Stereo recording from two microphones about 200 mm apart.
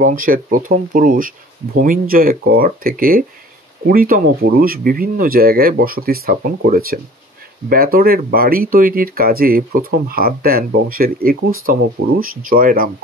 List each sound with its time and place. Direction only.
0.0 s speech: 40° right (ahead or behind)